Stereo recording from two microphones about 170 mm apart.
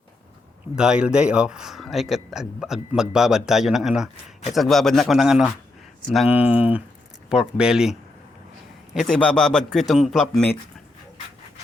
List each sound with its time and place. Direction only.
0.8 s a man's voice: 5° right (ahead or behind)